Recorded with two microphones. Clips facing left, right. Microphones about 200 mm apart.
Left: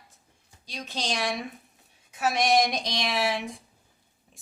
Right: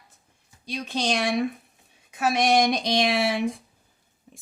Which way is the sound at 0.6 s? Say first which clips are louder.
Right 6 dB; 60° right (ahead or behind).